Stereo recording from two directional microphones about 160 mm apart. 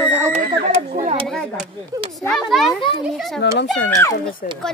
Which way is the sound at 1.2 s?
5° left (ahead or behind).